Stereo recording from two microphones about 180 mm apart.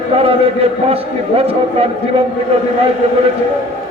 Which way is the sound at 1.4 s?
30° right (ahead or behind).